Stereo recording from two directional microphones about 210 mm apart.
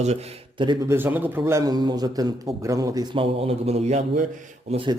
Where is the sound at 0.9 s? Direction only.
10° right (ahead or behind); by 4.3 s 35° right (ahead or behind).